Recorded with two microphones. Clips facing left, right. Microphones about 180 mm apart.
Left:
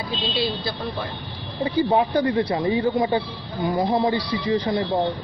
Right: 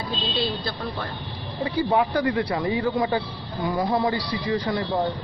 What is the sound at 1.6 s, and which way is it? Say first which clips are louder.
Speech: left 2 dB; 30° left (ahead or behind).